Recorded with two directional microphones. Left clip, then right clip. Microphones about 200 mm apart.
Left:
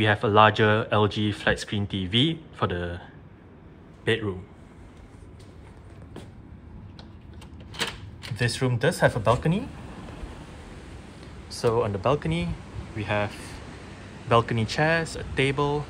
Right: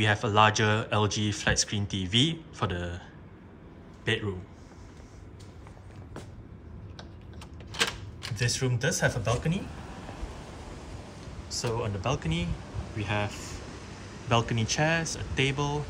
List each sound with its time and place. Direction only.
0.0 s speech: 5° right (ahead or behind)
4.0 s a man's voice: 5° right (ahead or behind)
8.4 s speech: 5° right (ahead or behind)
11.6 s speech: 5° right (ahead or behind)